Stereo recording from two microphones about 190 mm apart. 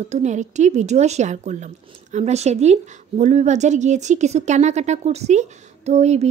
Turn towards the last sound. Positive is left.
turn(degrees=-35)  # may be behind; listen again after turning